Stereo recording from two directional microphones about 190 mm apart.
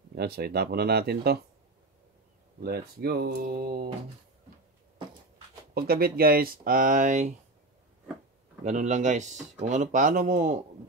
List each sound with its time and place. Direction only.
0.1 s speech: 55° right (ahead or behind)
2.6 s speech: 55° right (ahead or behind)
5.8 s speech: 55° right (ahead or behind)
8.6 s speech: 40° right (ahead or behind)